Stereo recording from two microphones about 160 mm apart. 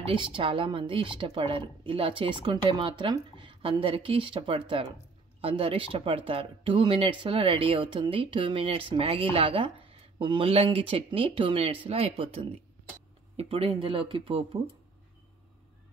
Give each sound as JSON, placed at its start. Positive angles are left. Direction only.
{"t": 0.0, "sound": "speech", "side_deg": -30}